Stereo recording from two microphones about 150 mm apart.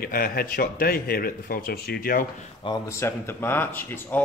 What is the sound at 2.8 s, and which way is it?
Speech, 15° left (ahead or behind).